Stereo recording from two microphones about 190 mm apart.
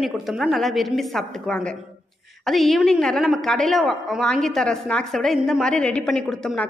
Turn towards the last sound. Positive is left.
turn(degrees=5)  # may be behind; listen again after turning